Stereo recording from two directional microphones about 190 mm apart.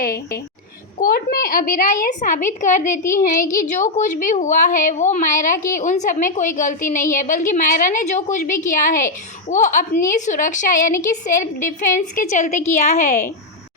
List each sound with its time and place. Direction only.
0.0 s a woman's voice: 50° left (ahead or behind)